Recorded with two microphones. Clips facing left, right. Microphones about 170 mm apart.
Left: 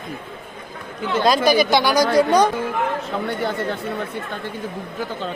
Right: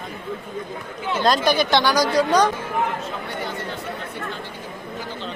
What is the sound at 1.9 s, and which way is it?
Speech, 55° left (ahead or behind).